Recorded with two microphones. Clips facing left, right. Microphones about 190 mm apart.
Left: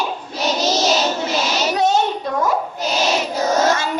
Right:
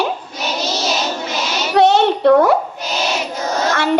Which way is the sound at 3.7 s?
65° right (ahead or behind).